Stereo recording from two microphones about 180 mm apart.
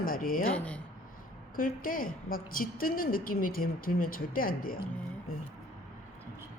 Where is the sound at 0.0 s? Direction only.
50° left (ahead or behind).